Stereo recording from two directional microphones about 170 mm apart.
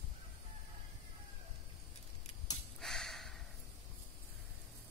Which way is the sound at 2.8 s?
Centre (ahead or behind).